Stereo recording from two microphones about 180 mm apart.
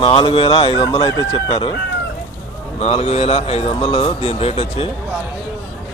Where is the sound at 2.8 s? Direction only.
35° left (ahead or behind).